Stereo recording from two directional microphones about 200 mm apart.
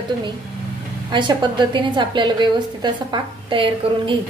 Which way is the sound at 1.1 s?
20° right (ahead or behind).